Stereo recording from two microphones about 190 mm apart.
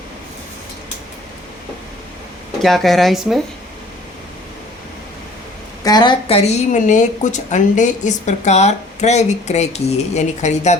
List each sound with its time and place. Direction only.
2.6 s speech: centre (ahead or behind)
5.8 s speech: 20° left (ahead or behind)